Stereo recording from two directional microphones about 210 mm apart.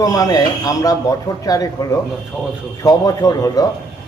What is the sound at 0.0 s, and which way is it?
A man's voice, 15° left (ahead or behind).